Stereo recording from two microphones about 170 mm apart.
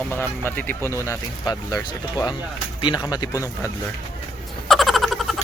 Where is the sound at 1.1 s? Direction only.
25° left (ahead or behind).